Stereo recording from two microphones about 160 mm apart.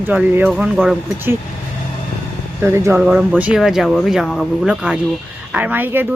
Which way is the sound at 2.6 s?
15° right (ahead or behind).